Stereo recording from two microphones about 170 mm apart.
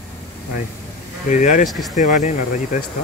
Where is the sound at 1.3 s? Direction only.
45° left (ahead or behind).